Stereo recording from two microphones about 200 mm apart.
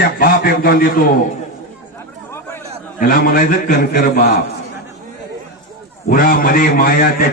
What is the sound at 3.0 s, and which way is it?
A man's voice, 45° left (ahead or behind).